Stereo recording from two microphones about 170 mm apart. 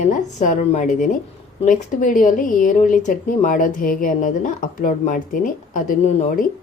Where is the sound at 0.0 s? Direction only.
45° left (ahead or behind).